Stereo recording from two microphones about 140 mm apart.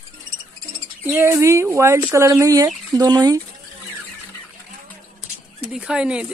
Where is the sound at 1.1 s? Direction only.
20° right (ahead or behind).